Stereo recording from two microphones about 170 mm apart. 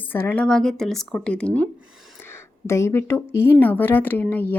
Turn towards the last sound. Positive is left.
turn(degrees=10)  # may be behind; listen again after turning